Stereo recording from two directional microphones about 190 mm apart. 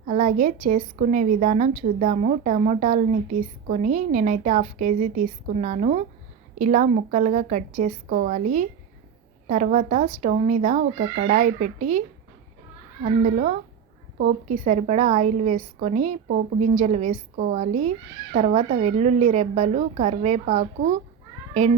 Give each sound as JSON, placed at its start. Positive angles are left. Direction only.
{"t": 0.0, "sound": "a woman's voice", "side_deg": -45}